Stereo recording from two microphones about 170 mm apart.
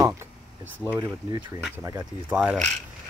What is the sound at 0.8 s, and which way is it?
Speech, 10° right (ahead or behind).